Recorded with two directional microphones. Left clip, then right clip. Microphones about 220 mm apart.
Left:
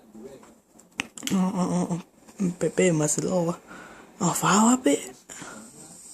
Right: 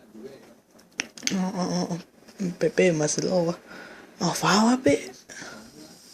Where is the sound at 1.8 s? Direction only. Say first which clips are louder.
Left 1 dB; 20° left (ahead or behind).